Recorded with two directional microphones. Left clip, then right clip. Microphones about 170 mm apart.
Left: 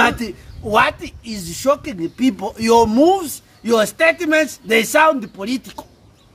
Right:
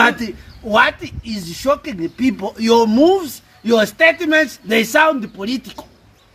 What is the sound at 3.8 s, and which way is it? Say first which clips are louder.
Speech: right 3 dB; 45° left (ahead or behind).